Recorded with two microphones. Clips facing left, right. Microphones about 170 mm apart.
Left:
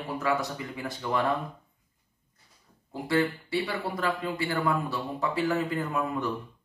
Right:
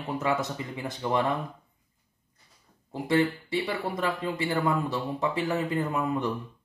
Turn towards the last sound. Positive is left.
turn(degrees=-20)  # may be behind; listen again after turning